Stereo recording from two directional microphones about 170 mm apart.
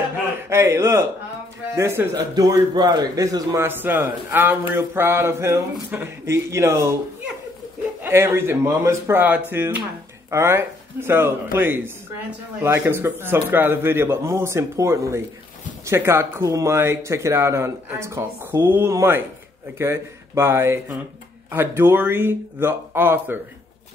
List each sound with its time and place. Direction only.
0.5 s a man's voice: 15° right (ahead or behind)
8.0 s a man's voice: 15° right (ahead or behind)